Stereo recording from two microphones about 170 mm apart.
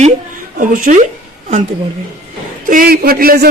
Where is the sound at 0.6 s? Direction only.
50° right (ahead or behind).